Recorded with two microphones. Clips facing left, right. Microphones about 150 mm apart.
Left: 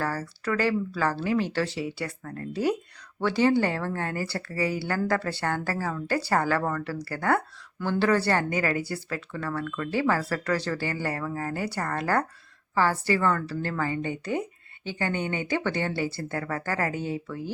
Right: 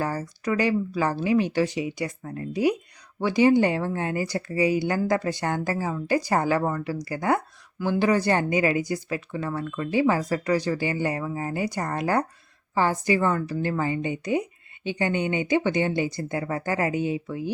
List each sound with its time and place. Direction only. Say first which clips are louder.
0.0 s speech: right 2 dB; 15° right (ahead or behind)